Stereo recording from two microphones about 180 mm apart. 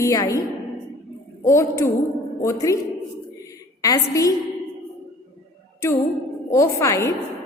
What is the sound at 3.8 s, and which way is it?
Speech, 20° left (ahead or behind).